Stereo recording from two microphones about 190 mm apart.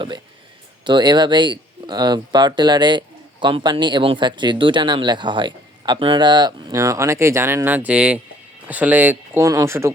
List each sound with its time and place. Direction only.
0.9 s speech: 25° right (ahead or behind)